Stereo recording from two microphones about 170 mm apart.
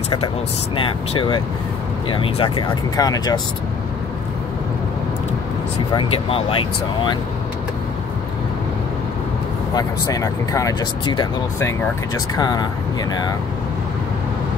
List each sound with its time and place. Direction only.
0.7 s speech: 30° left (ahead or behind)
5.9 s speech: 35° left (ahead or behind)
9.8 s speech: 20° left (ahead or behind)